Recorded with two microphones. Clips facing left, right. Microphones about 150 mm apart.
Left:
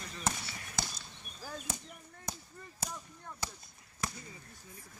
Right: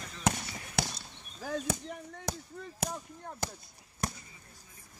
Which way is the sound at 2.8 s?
50° right (ahead or behind).